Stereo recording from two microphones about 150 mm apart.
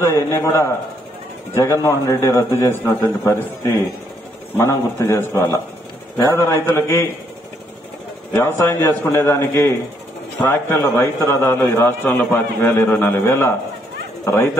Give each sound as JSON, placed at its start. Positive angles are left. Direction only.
{"t": 0.0, "sound": "a man's voice", "side_deg": 20}
{"t": 8.3, "sound": "a man's voice", "side_deg": 15}